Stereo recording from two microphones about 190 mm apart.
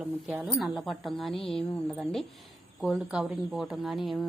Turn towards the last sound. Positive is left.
turn(degrees=0)  # may be behind; listen again after turning